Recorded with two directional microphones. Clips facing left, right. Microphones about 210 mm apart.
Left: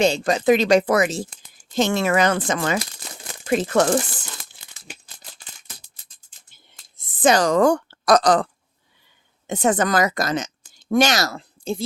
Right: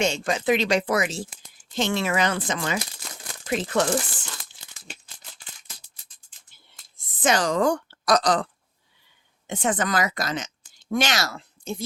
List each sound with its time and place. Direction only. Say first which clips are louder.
0.0 s speech: left 6 dB; 35° left (ahead or behind)
7.2 s a woman's voice: left 6 dB; 35° left (ahead or behind)
9.5 s speech: left 5 dB; 40° left (ahead or behind)